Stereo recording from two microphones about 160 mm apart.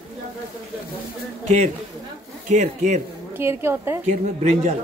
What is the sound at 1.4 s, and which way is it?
A man's voice, 45° right (ahead or behind).